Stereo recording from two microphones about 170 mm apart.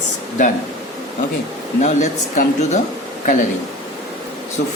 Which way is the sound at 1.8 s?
45° left (ahead or behind).